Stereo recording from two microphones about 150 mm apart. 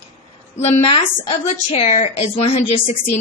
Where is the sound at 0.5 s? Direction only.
50° left (ahead or behind).